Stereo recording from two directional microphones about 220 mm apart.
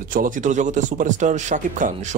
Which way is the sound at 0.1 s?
35° right (ahead or behind).